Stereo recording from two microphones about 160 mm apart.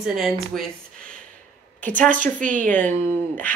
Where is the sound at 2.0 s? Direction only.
55° right (ahead or behind).